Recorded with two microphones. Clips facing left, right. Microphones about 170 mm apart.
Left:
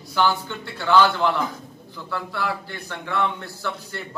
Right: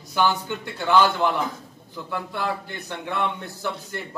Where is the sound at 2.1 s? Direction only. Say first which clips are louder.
Even; 20° right (ahead or behind).